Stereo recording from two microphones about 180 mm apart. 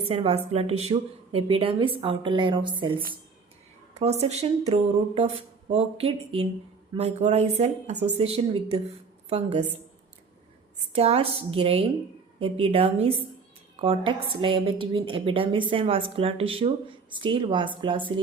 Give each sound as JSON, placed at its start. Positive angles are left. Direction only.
{"t": 0.0, "sound": "speech", "side_deg": -35}
{"t": 3.9, "sound": "speech", "side_deg": -35}
{"t": 10.9, "sound": "a woman's voice", "side_deg": -35}